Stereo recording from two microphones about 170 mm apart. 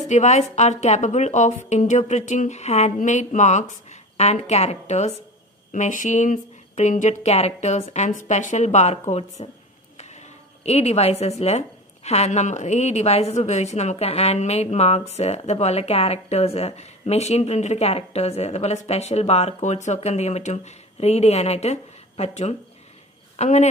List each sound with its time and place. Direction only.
0.0 s a woman's voice: 45° left (ahead or behind)
10.6 s a woman's voice: 40° left (ahead or behind)